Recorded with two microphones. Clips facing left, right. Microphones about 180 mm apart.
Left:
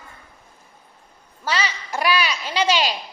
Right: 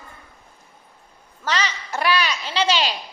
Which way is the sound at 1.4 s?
10° left (ahead or behind).